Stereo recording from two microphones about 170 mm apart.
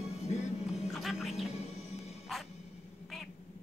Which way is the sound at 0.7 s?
Centre (ahead or behind).